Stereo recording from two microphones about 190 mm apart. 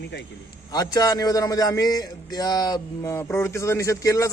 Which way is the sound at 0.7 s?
20° left (ahead or behind).